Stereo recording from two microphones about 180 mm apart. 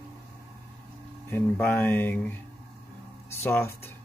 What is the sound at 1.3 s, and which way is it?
Speech, 10° left (ahead or behind).